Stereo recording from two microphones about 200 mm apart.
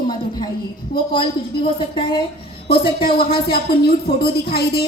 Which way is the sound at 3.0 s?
50° left (ahead or behind).